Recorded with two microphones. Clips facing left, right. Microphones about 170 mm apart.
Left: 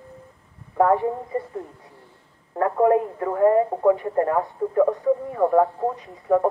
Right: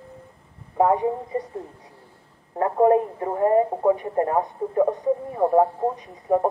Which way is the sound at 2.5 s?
25° right (ahead or behind).